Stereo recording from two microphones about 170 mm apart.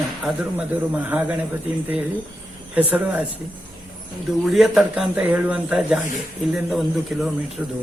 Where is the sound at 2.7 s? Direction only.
10° right (ahead or behind).